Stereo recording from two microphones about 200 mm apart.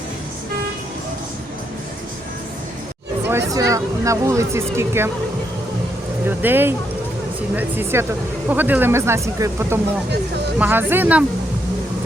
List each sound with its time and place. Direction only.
3.5 s speech: 15° right (ahead or behind)
6.2 s speech: 10° right (ahead or behind)